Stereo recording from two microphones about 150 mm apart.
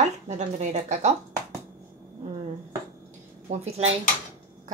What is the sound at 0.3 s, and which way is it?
Speech, 50° right (ahead or behind).